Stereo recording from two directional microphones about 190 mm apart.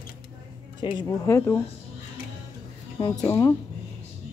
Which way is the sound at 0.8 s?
25° left (ahead or behind).